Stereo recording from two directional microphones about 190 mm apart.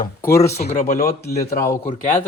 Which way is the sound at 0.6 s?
40° left (ahead or behind).